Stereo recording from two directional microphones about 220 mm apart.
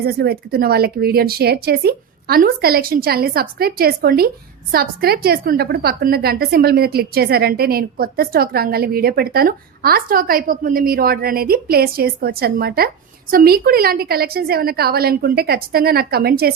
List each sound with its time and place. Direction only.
0.0 s a woman's voice: 45° right (ahead or behind)